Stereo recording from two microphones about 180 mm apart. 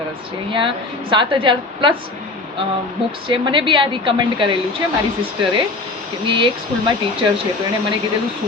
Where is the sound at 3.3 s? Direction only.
30° right (ahead or behind).